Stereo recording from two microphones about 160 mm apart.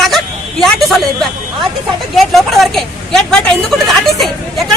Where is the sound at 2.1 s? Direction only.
Centre (ahead or behind).